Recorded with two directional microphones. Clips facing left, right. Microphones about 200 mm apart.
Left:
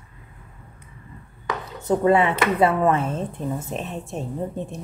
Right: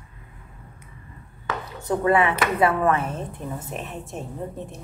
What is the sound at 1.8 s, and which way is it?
Speech, 25° left (ahead or behind).